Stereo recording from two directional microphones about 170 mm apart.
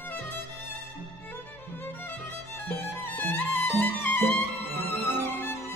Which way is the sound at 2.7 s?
10° left (ahead or behind).